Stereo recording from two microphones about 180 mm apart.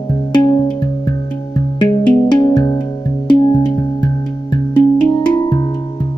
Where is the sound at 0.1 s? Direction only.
25° left (ahead or behind).